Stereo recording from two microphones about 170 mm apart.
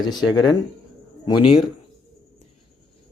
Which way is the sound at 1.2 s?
30° left (ahead or behind).